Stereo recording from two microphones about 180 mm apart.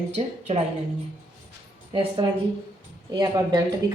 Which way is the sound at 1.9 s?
30° right (ahead or behind).